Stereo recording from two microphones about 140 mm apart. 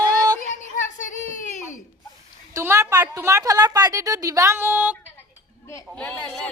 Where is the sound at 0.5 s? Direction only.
65° left (ahead or behind).